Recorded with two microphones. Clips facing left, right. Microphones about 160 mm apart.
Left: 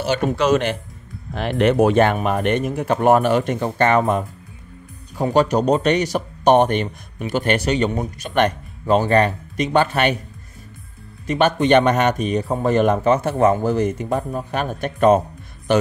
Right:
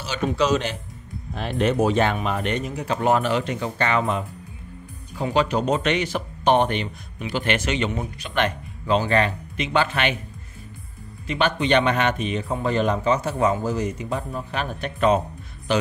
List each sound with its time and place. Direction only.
0.0 s speech: 55° left (ahead or behind)
1.3 s speech: 70° left (ahead or behind); by 10.1 s 45° left (ahead or behind)
11.2 s speech: 45° left (ahead or behind)